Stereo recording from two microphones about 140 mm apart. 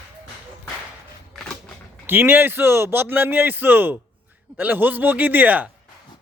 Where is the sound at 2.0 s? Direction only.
15° right (ahead or behind).